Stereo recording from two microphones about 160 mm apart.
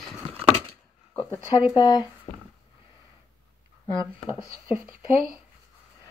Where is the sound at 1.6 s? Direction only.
25° left (ahead or behind).